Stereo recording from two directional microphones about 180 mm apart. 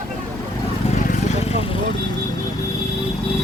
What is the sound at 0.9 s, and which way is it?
Vehicle, 45° left (ahead or behind).